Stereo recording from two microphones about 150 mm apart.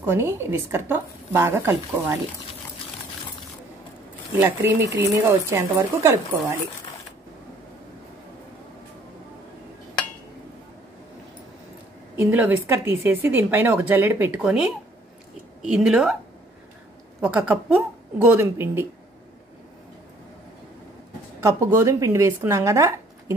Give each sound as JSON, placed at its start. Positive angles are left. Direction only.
{"t": 0.0, "sound": "speech", "side_deg": -15}
{"t": 4.4, "sound": "speech", "side_deg": -15}
{"t": 12.2, "sound": "a woman's voice", "side_deg": -10}
{"t": 17.2, "sound": "speech", "side_deg": -10}
{"t": 21.4, "sound": "speech", "side_deg": -20}